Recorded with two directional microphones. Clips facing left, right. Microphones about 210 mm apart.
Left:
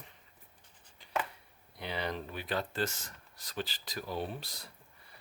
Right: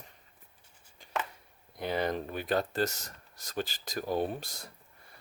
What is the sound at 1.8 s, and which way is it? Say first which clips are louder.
Speech: right 6 dB; 45° right (ahead or behind).